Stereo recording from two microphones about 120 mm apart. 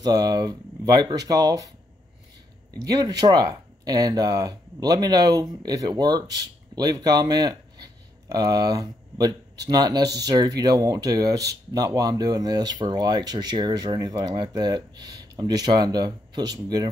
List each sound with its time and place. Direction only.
0.0 s speech: 35° right (ahead or behind)
2.8 s speech: 30° right (ahead or behind)